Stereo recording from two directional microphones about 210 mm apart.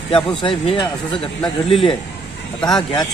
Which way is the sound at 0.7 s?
20° left (ahead or behind).